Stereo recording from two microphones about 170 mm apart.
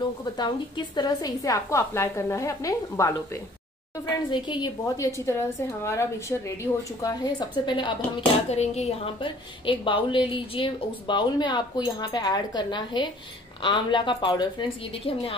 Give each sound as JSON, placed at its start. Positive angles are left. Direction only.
{"t": 0.2, "sound": "a woman's voice", "side_deg": 25}
{"t": 8.5, "sound": "a woman's voice", "side_deg": 40}